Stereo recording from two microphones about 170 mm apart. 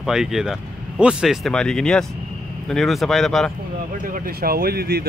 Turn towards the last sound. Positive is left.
turn(degrees=-65)  # may be behind; listen again after turning